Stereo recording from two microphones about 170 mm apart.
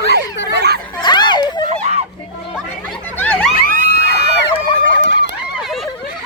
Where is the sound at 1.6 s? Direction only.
40° right (ahead or behind).